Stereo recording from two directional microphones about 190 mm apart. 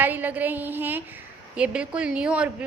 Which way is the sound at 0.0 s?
10° right (ahead or behind).